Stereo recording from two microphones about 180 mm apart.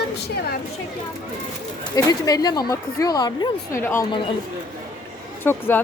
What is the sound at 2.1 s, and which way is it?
A woman's voice, 20° left (ahead or behind).